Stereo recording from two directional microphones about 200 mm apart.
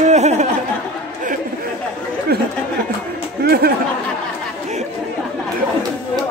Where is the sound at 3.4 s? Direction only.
50° right (ahead or behind).